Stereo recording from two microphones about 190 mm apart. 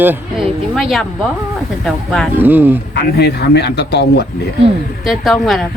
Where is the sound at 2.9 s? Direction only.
60° left (ahead or behind).